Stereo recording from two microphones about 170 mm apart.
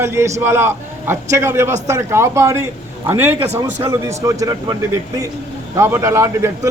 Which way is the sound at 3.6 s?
20° right (ahead or behind).